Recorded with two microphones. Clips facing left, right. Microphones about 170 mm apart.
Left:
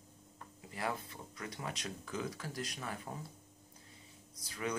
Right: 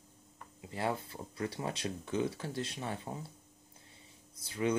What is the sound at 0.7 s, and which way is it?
Speech, 30° right (ahead or behind).